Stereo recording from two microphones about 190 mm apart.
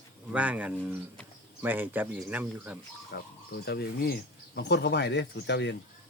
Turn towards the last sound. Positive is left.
turn(degrees=65)  # may be behind; listen again after turning